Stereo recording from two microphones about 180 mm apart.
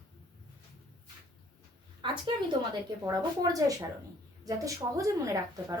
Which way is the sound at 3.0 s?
20° right (ahead or behind).